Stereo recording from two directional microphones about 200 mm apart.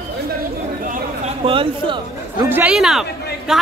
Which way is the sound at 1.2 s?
25° right (ahead or behind).